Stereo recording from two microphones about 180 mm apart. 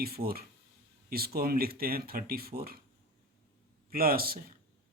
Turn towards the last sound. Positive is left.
turn(degrees=-55)  # may be behind; listen again after turning